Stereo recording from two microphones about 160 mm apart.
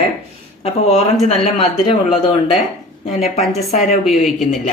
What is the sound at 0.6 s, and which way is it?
Speech, 40° left (ahead or behind).